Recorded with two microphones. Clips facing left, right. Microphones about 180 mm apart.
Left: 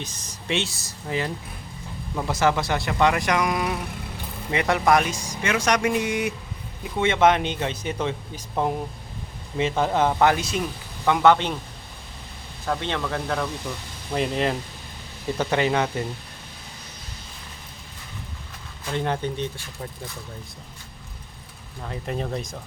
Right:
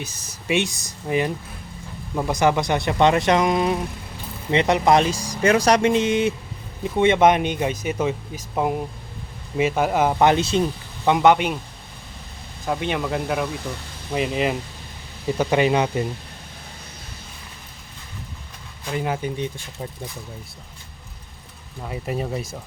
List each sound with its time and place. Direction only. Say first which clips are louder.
0.0 s speech: right 2 dB; 10° right (ahead or behind)
9.6 s speech: right 2 dB; 10° right (ahead or behind)
12.6 s speech: right 3 dB; 15° right (ahead or behind)
15.4 s speech: right 3 dB; 15° right (ahead or behind)
18.9 s speech: right 1 dB; 5° right (ahead or behind)
21.8 s speech: right 2 dB; 10° right (ahead or behind)